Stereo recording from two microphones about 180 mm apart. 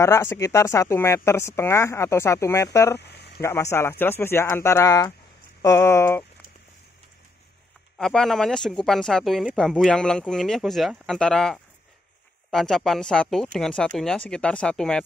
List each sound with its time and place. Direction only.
0.0 s speech: 15° left (ahead or behind)
3.0 s a sound: 70° left (ahead or behind)
3.3 s speech: 15° left (ahead or behind)
8.0 s speech: 5° left (ahead or behind)